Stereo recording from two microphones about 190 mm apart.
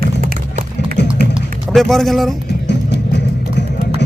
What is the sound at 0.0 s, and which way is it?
Music, 50° right (ahead or behind).